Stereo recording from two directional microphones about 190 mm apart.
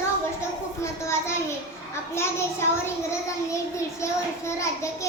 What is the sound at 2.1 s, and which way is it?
A child's voice, 15° left (ahead or behind).